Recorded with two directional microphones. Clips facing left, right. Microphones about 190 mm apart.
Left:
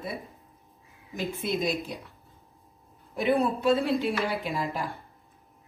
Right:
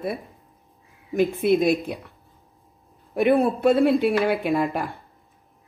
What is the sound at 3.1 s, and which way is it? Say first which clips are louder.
Speech: right 6 dB; 60° right (ahead or behind).